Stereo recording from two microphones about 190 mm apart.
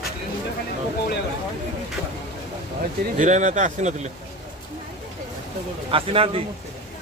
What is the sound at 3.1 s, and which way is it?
Speech, 40° right (ahead or behind).